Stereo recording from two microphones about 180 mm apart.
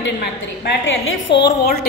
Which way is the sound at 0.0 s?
70° left (ahead or behind).